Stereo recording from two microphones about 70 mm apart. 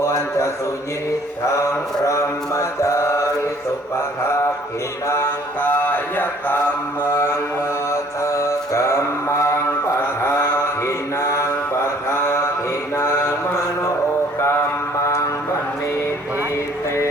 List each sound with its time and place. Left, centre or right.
0.0 s a sound: left
2.0 s mantra: left
5.0 s mantra: left
5.5 s mantra: left
7.9 s mantra: left